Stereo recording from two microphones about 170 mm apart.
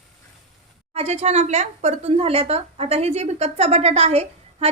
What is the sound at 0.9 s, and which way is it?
Speech, 40° right (ahead or behind).